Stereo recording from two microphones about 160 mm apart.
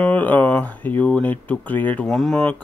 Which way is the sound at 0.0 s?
10° left (ahead or behind).